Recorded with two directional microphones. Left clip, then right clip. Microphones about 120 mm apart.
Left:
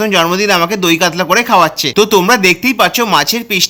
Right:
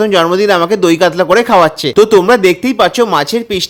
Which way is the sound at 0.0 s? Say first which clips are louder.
Right 2 dB; 40° right (ahead or behind).